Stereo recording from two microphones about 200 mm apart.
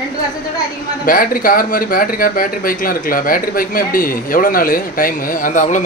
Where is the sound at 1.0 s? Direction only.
45° left (ahead or behind).